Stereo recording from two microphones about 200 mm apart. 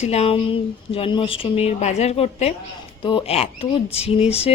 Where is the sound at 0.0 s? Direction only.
30° left (ahead or behind).